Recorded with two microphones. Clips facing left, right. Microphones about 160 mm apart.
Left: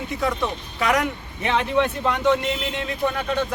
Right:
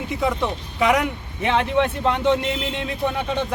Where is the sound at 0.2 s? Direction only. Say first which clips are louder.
Right 1 dB; 15° right (ahead or behind).